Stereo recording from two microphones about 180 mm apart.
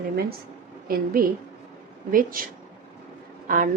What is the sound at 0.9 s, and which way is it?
Speech, 55° right (ahead or behind).